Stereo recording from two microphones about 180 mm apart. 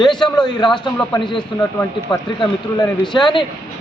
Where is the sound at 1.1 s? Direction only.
20° left (ahead or behind).